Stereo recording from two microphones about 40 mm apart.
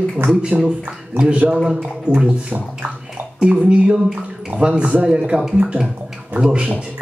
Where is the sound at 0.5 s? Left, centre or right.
Right.